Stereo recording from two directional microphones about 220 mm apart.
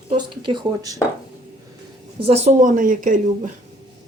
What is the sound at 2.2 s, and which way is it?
Speech, 30° right (ahead or behind).